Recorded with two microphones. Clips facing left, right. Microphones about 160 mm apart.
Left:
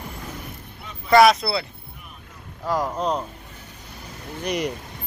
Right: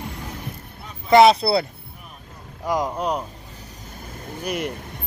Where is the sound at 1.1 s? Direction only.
30° right (ahead or behind).